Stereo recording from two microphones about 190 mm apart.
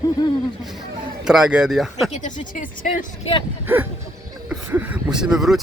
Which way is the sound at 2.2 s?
40° left (ahead or behind).